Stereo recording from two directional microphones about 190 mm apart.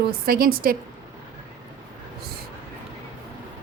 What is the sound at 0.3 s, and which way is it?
Speech, 50° right (ahead or behind).